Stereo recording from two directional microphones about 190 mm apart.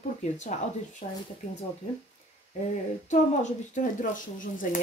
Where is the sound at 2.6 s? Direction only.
40° left (ahead or behind).